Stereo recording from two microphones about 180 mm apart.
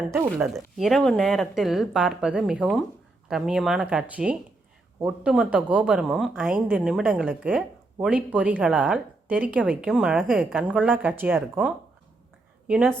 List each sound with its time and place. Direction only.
0.3 s a woman's voice: centre (ahead or behind)